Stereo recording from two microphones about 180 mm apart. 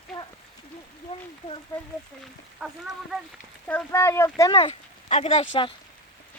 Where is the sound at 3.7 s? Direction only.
10° left (ahead or behind); by 5.5 s 35° left (ahead or behind).